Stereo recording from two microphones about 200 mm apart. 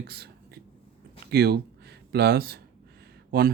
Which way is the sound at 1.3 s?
55° right (ahead or behind).